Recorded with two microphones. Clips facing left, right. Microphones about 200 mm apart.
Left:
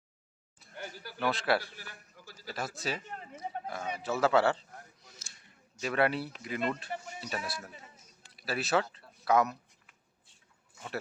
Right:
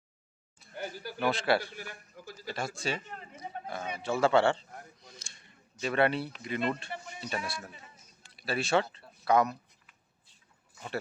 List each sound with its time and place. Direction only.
0.8 s speech: 15° right (ahead or behind)
1.3 s speech: centre (ahead or behind)
1.7 s a man's voice: 15° right (ahead or behind)
2.5 s speech: 5° left (ahead or behind)
5.0 s a sound: 5° left (ahead or behind)
5.8 s speech: 5° left (ahead or behind)
6.9 s speech: 40° left (ahead or behind)
7.2 s speech: 5° left (ahead or behind)